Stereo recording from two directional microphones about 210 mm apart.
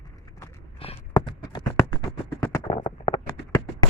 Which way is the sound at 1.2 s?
20° left (ahead or behind).